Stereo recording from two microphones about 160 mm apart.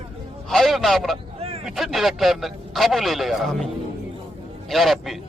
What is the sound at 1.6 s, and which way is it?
A man's voice, centre (ahead or behind).